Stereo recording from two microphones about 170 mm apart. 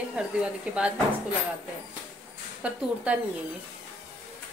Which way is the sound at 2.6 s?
5° right (ahead or behind).